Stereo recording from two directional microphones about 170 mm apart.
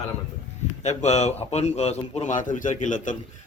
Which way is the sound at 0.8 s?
40° left (ahead or behind).